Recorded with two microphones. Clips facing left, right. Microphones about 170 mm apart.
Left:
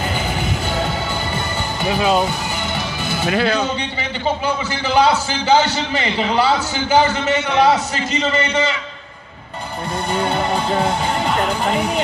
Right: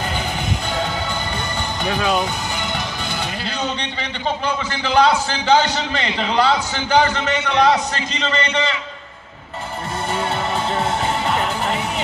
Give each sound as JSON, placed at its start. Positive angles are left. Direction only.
{"t": 3.3, "sound": "speech", "side_deg": 70}
{"t": 4.8, "sound": "a man's voice", "side_deg": 10}
{"t": 10.1, "sound": "music", "side_deg": 0}